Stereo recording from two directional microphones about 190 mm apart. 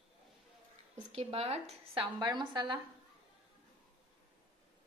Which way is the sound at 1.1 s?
30° right (ahead or behind).